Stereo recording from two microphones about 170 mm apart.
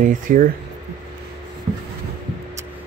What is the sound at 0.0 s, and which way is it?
Speech, 50° right (ahead or behind).